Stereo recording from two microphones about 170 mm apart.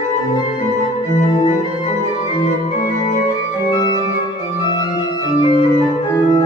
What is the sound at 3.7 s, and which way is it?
Organ, 25° left (ahead or behind).